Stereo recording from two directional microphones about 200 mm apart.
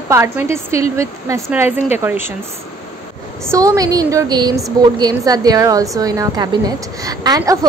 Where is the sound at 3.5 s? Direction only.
15° right (ahead or behind).